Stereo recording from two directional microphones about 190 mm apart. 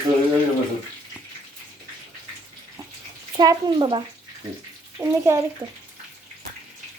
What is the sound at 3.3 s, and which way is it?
Speech, 20° right (ahead or behind).